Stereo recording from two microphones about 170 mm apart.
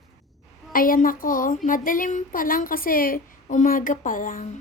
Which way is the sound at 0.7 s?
55° left (ahead or behind).